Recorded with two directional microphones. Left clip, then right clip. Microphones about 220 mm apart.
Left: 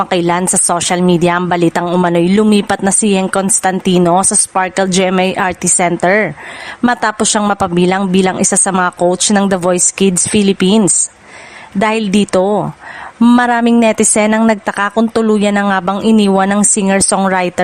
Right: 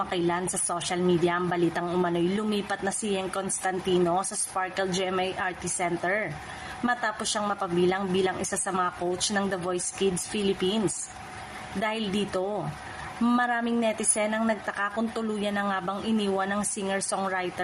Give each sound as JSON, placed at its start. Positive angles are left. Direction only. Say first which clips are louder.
{"t": 0.1, "sound": "a woman's voice", "louder": "left 15 dB", "side_deg": 50}